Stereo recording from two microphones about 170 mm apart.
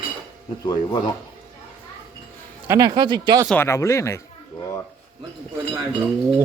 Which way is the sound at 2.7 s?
25° right (ahead or behind).